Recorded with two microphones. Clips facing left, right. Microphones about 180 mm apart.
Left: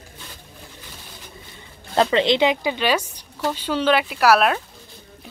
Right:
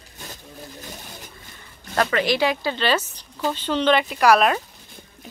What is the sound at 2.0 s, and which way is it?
Speech, 25° left (ahead or behind).